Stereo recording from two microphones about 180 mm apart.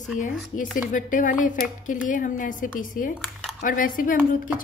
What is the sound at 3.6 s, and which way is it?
Speech, 50° left (ahead or behind).